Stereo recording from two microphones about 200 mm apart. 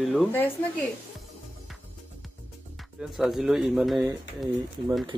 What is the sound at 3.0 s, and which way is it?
Speech, centre (ahead or behind).